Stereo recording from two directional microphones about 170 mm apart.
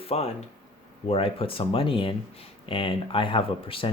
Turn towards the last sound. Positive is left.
turn(degrees=30)  # may be behind; listen again after turning